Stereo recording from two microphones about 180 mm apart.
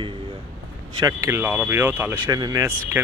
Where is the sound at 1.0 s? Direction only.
15° right (ahead or behind).